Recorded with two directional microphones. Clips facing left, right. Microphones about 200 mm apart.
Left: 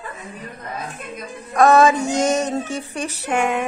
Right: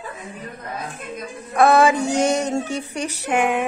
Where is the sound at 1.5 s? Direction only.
10° right (ahead or behind).